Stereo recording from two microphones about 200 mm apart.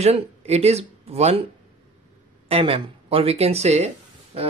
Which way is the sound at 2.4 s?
30° right (ahead or behind).